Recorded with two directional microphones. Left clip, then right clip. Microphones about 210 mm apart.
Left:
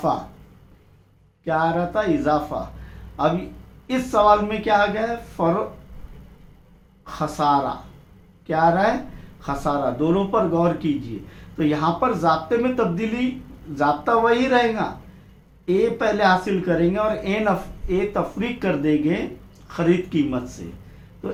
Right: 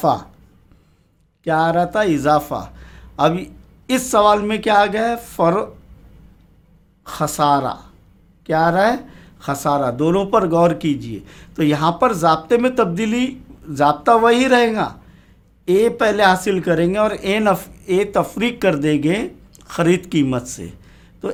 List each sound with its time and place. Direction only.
1.5 s speech: 45° right (ahead or behind)
7.0 s speech: 45° right (ahead or behind)